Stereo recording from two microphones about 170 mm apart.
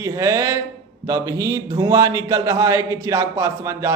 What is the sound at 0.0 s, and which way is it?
A man's voice, 20° right (ahead or behind).